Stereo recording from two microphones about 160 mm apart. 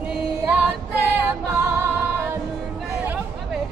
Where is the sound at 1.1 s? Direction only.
15° right (ahead or behind).